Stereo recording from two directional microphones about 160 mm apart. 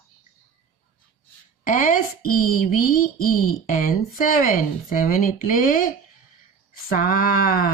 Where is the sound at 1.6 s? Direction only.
60° left (ahead or behind).